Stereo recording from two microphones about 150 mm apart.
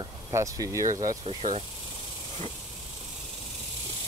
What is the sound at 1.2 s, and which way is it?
Speech, 45° right (ahead or behind).